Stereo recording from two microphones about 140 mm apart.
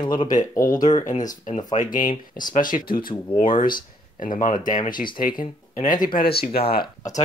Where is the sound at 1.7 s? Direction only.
65° left (ahead or behind); by 3.4 s 90° left.